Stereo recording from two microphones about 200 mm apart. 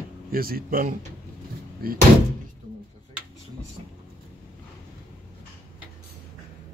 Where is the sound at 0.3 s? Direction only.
45° right (ahead or behind).